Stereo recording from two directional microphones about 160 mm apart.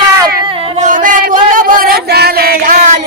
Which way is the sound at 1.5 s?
60° right (ahead or behind).